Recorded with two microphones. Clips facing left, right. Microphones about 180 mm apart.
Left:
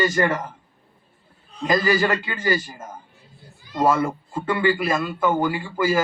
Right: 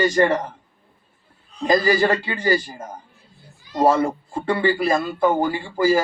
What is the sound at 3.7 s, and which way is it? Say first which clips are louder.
Speech: right 2 dB; 30° right (ahead or behind).